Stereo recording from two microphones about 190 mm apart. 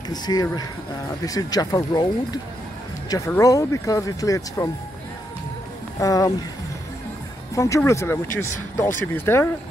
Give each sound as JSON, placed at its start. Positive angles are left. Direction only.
{"t": 0.1, "sound": "speech", "side_deg": 20}
{"t": 5.9, "sound": "speech", "side_deg": 20}
{"t": 7.5, "sound": "speech", "side_deg": 15}